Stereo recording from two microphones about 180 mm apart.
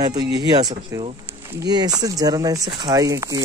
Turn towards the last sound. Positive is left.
turn(degrees=-20)  # may be behind; listen again after turning